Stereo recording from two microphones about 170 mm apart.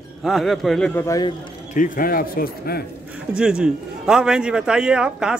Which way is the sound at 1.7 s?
55° left (ahead or behind).